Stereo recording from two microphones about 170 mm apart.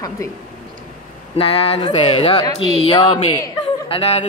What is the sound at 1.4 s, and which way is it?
Speech, 35° left (ahead or behind).